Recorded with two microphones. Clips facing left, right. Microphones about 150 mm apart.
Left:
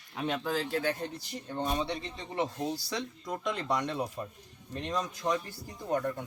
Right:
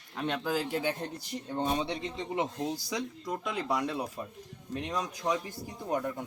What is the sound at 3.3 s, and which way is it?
A man's voice, 5° right (ahead or behind).